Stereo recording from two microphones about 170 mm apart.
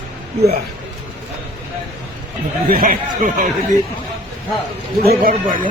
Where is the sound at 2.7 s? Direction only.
55° right (ahead or behind).